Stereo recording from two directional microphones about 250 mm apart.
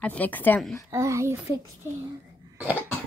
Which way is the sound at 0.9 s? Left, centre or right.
Centre.